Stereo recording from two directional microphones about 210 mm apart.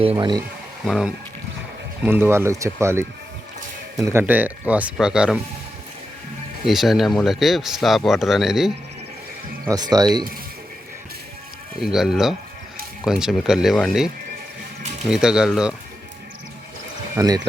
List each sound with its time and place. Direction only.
0.0 s speech: 25° right (ahead or behind)
0.9 s speech: centre (ahead or behind)
6.7 s speech: centre (ahead or behind)
9.6 s speech: 20° right (ahead or behind)
11.8 s speech: centre (ahead or behind)
15.1 s speech: 5° right (ahead or behind)
17.2 s speech: 20° right (ahead or behind)